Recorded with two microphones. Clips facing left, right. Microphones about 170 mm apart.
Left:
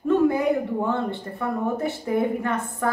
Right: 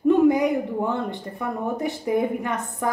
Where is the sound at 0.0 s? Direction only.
15° right (ahead or behind).